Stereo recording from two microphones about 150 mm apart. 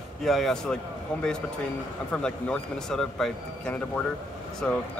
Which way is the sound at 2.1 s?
5° left (ahead or behind).